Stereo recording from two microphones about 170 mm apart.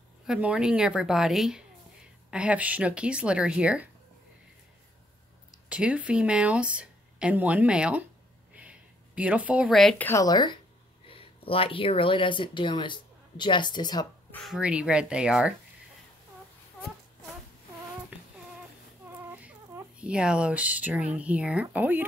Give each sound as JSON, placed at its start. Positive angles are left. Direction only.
{"t": 0.3, "sound": "a woman's voice", "side_deg": -5}
{"t": 5.7, "sound": "speech", "side_deg": -5}
{"t": 8.5, "sound": "a sound", "side_deg": -10}
{"t": 10.0, "sound": "speech", "side_deg": 20}
{"t": 14.3, "sound": "a woman's voice", "side_deg": 0}
{"t": 19.3, "sound": "speech", "side_deg": -10}